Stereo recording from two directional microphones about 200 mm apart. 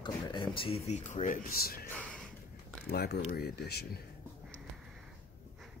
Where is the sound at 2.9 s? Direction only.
55° left (ahead or behind).